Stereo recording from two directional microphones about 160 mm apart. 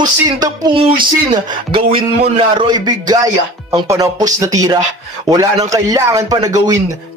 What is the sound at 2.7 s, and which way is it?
Speech, 25° right (ahead or behind).